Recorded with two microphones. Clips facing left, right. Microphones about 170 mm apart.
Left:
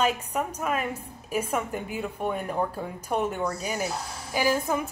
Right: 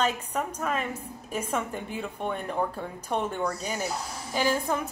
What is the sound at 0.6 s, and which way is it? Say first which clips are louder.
A woman's voice: left 1 dB; 10° left (ahead or behind).